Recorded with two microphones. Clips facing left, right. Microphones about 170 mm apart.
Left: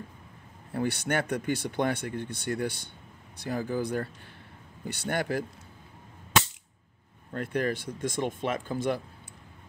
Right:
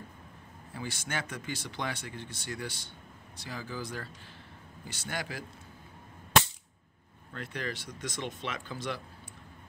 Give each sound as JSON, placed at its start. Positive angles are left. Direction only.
{"t": 0.7, "sound": "speech", "side_deg": 60}
{"t": 7.3, "sound": "speech", "side_deg": 50}